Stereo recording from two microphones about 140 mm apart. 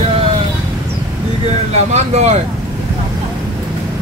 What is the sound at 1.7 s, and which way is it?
Speech, 55° right (ahead or behind).